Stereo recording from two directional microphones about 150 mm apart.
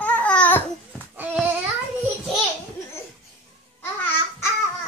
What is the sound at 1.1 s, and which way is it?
Babbling, 10° right (ahead or behind).